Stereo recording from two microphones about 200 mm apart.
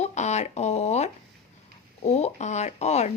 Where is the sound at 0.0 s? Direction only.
35° left (ahead or behind).